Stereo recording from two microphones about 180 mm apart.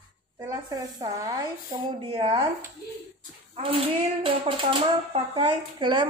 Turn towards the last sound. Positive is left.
turn(degrees=-25)  # may be behind; listen again after turning